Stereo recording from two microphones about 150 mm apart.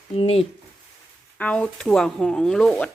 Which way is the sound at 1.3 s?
10° left (ahead or behind).